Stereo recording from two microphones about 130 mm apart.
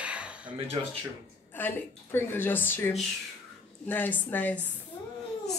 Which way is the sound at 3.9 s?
15° left (ahead or behind).